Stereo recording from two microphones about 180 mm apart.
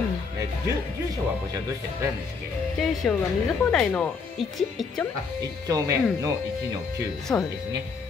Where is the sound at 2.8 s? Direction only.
Centre (ahead or behind).